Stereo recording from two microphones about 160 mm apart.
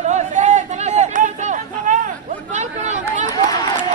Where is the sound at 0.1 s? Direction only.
50° right (ahead or behind).